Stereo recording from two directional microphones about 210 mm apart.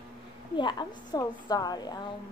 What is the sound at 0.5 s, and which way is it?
Speech, 20° left (ahead or behind).